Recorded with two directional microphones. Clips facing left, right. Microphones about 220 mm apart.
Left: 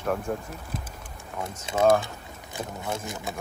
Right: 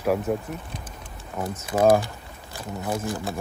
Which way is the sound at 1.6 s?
25° left (ahead or behind).